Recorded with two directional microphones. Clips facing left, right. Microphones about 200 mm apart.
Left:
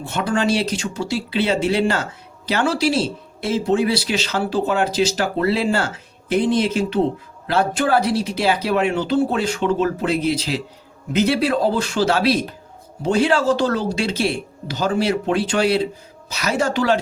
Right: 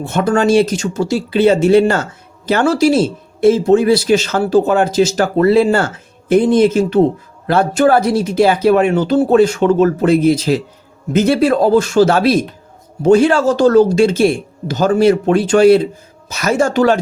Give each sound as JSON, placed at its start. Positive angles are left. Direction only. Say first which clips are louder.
{"t": 0.0, "sound": "speech", "louder": "right 7 dB", "side_deg": -45}